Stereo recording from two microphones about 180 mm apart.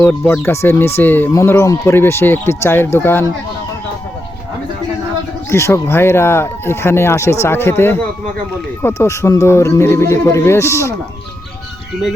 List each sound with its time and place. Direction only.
0.0 s speech: 10° left (ahead or behind)
5.5 s speech: 15° left (ahead or behind)